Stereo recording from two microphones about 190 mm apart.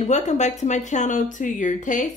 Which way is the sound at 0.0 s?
40° left (ahead or behind).